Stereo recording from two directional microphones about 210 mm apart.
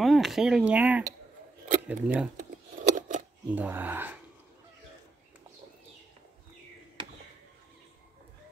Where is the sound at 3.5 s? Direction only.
10° right (ahead or behind).